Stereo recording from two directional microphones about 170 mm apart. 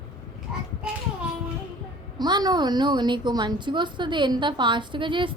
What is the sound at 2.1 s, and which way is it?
A woman's voice, 25° right (ahead or behind).